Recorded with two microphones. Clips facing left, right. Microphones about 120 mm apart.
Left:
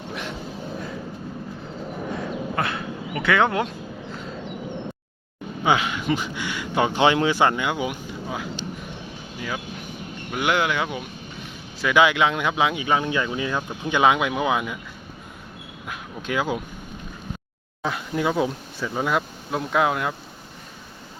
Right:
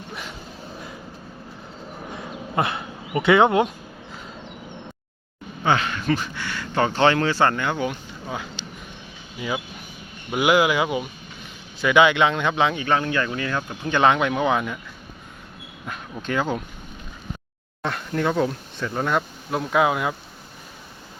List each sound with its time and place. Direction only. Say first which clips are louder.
2.6 s speech: right 7 dB; 20° right (ahead or behind)
5.6 s speech: even; 15° left (ahead or behind)
9.4 s speech: right 3 dB; 10° right (ahead or behind)
15.9 s speech: right 1 dB; 5° left (ahead or behind)
17.8 s speech: even; 5° left (ahead or behind)